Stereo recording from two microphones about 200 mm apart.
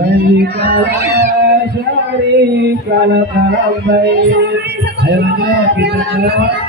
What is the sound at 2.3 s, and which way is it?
Speech, 55° right (ahead or behind).